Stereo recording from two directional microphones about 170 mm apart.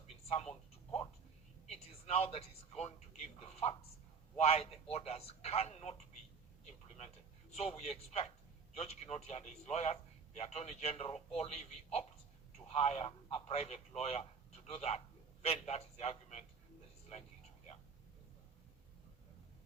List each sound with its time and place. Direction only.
0.3 s a man's voice: 35° left (ahead or behind)
1.6 s a man's voice: 35° left (ahead or behind)
7.5 s a man's voice: 40° left (ahead or behind)